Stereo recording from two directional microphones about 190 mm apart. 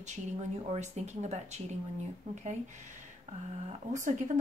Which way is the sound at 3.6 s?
40° right (ahead or behind).